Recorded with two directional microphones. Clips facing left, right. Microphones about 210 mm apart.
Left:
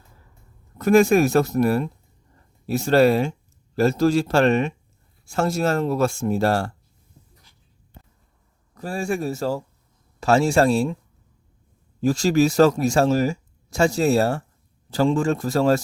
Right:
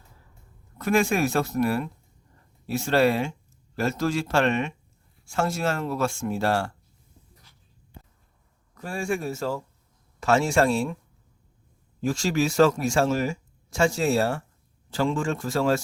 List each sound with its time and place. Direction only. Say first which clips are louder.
0.8 s speech: left 7 dB; 40° left (ahead or behind)
8.7 s speech: left 3 dB; 35° left (ahead or behind)
12.0 s speech: left 6 dB; 40° left (ahead or behind)